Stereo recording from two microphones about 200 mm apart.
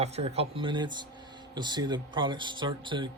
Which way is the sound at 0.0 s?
30° right (ahead or behind).